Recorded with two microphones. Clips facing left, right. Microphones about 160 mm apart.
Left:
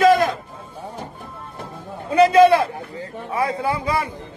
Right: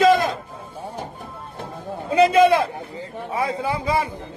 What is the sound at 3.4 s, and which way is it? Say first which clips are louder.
Speech: even; 20° right (ahead or behind).